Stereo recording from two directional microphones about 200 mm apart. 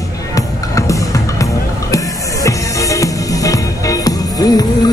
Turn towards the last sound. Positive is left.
turn(degrees=20)  # may be behind; listen again after turning